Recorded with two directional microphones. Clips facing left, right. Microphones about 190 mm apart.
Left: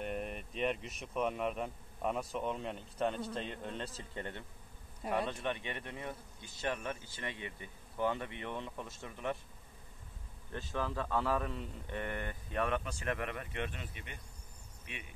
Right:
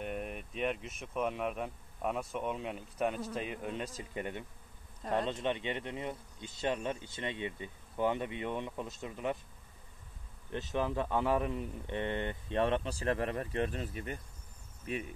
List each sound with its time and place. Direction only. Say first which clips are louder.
0.0 s speech: even; centre (ahead or behind)
5.0 s speech: right 2 dB; 10° left (ahead or behind)
5.3 s speech: right 4 dB; 20° right (ahead or behind)
10.5 s speech: right 4 dB; 20° right (ahead or behind); by 15.0 s 40° right (ahead or behind)